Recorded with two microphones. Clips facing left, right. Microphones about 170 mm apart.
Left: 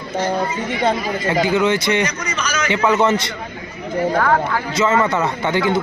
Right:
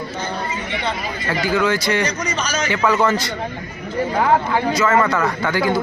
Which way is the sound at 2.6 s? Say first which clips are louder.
Left 2 dB; 20° left (ahead or behind).